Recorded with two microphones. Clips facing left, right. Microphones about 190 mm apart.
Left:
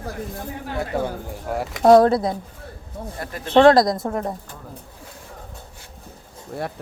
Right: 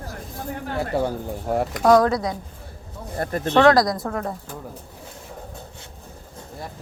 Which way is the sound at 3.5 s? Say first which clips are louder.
Left 3 dB; 25° left (ahead or behind).